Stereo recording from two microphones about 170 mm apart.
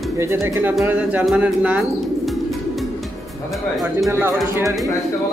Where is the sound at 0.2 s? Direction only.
15° right (ahead or behind).